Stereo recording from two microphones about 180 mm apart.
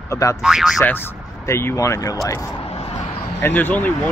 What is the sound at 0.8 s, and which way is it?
Speech, 10° left (ahead or behind).